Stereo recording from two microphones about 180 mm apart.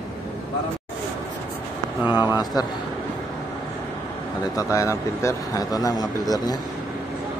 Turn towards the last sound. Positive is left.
turn(degrees=20)  # may be behind; listen again after turning